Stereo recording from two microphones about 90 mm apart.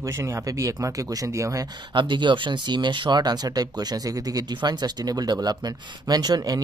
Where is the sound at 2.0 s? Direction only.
60° right (ahead or behind).